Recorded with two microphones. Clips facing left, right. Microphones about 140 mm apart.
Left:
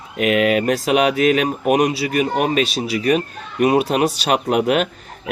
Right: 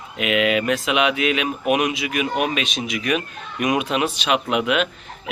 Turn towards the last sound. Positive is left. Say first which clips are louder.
# left 4 dB
turn(degrees=40)  # may be behind; listen again after turning